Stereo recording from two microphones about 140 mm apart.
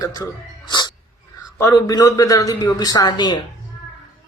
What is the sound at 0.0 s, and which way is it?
Speech, 25° left (ahead or behind).